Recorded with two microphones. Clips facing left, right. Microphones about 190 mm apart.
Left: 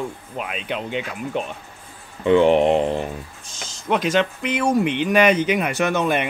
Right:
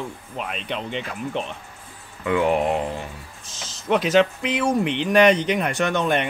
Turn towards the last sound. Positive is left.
turn(degrees=5)  # may be behind; listen again after turning